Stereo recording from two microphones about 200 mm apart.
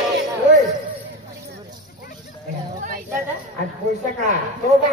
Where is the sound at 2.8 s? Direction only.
40° right (ahead or behind).